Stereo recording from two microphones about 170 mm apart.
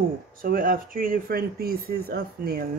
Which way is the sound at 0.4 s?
55° right (ahead or behind).